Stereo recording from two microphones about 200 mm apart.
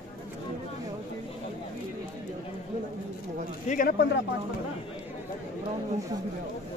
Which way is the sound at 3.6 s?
45° left (ahead or behind).